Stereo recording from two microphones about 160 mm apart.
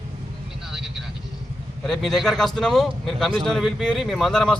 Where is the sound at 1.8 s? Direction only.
Centre (ahead or behind).